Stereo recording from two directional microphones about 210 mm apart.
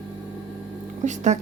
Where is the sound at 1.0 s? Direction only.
35° right (ahead or behind).